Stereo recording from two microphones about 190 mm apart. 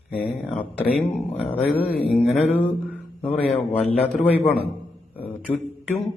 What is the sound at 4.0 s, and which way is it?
Speech, 35° left (ahead or behind).